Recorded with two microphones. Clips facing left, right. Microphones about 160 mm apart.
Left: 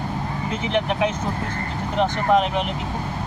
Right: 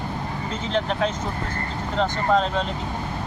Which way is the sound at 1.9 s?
15° left (ahead or behind).